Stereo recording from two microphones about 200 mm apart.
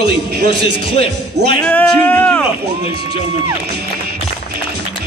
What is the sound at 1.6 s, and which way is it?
Speech, 10° left (ahead or behind).